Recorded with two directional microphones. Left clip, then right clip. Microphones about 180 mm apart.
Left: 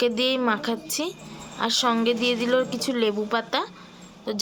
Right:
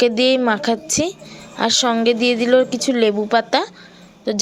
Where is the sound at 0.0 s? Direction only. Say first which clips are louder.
Right 7 dB; 30° right (ahead or behind).